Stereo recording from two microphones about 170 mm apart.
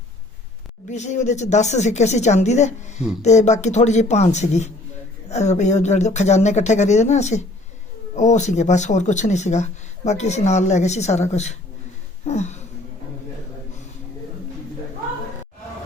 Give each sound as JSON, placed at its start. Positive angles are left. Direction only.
{"t": 0.9, "sound": "speech", "side_deg": 45}